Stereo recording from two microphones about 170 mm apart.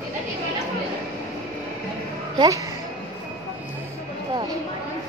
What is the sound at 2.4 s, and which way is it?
Speech, 20° right (ahead or behind).